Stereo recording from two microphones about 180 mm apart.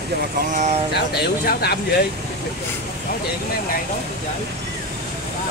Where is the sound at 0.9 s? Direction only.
65° left (ahead or behind).